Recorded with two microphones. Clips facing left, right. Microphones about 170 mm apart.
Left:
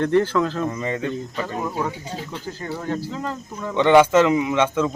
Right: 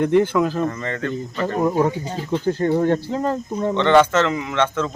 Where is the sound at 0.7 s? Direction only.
15° left (ahead or behind).